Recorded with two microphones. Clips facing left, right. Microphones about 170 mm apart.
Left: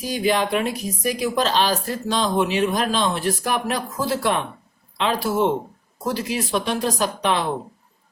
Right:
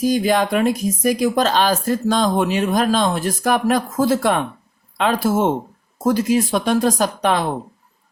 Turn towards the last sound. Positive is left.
turn(degrees=-45)  # may be behind; listen again after turning